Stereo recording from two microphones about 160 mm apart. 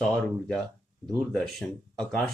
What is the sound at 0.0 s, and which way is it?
Speech, 5° left (ahead or behind).